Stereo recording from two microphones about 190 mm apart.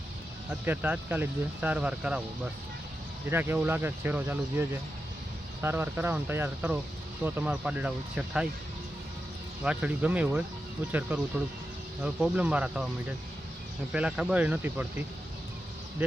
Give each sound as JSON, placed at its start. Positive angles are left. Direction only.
{"t": 0.6, "sound": "speech", "side_deg": -10}
{"t": 5.6, "sound": "speech", "side_deg": -10}
{"t": 9.6, "sound": "speech", "side_deg": -5}
{"t": 12.0, "sound": "speech", "side_deg": -5}